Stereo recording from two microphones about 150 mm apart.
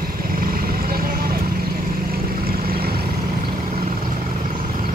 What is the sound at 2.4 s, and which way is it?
Vehicle, 90° right.